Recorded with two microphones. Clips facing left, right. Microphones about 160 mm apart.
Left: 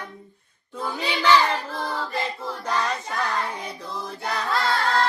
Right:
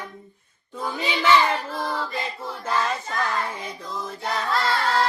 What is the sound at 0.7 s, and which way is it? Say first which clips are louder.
Child singing: right 1 dB; centre (ahead or behind).